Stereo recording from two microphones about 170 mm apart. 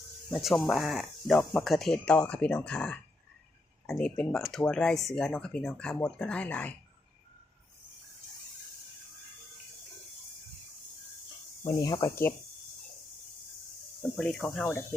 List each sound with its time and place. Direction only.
0.4 s speech: centre (ahead or behind)
11.6 s speech: 20° left (ahead or behind)
14.0 s speech: 5° left (ahead or behind)